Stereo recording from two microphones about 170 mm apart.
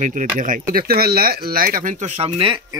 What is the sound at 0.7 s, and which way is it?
Speech, 65° right (ahead or behind).